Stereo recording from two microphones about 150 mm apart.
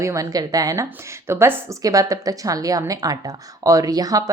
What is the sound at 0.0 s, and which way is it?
A woman's voice, 20° right (ahead or behind).